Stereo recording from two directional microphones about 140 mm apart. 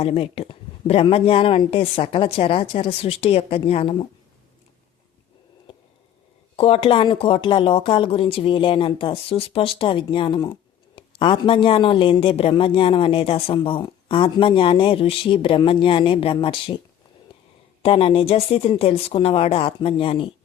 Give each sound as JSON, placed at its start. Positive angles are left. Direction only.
{"t": 0.0, "sound": "speech", "side_deg": 45}
{"t": 6.6, "sound": "speech", "side_deg": 45}
{"t": 17.8, "sound": "speech", "side_deg": 40}